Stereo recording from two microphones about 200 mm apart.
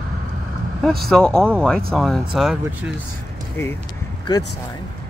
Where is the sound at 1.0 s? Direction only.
5° left (ahead or behind).